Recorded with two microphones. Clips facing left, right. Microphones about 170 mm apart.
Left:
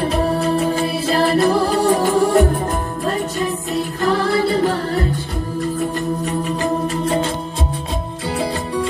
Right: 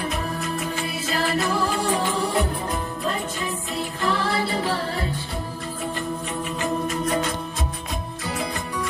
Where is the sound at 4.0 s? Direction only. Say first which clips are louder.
Left 7 dB; 45° left (ahead or behind).